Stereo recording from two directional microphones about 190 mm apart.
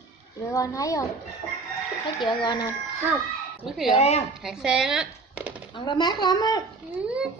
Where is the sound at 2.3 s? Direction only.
25° left (ahead or behind).